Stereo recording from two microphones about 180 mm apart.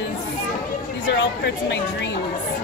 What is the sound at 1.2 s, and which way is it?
A woman's voice, 80° left.